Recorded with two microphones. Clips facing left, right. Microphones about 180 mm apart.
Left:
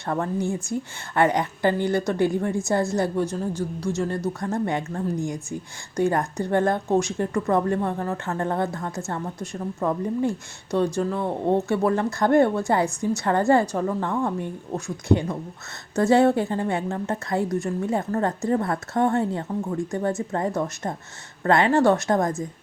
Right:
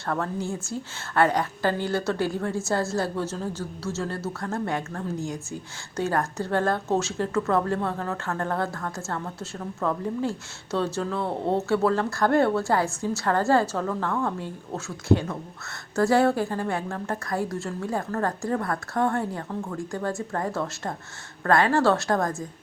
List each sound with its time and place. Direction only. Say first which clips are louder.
0.0 s a woman's voice: left 3 dB; 15° left (ahead or behind)